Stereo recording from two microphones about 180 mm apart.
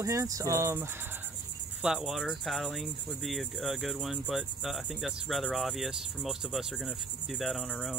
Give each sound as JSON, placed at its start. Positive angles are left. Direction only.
{"t": 0.0, "sound": "speech", "side_deg": -15}
{"t": 1.8, "sound": "cricket", "side_deg": -5}